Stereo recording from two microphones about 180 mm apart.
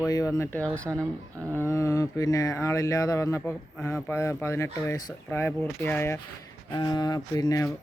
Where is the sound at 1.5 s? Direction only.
15° left (ahead or behind).